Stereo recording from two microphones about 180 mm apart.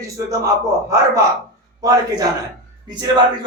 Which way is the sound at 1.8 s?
20° right (ahead or behind).